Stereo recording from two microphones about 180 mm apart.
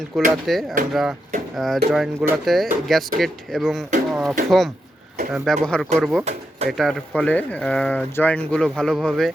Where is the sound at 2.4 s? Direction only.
Centre (ahead or behind).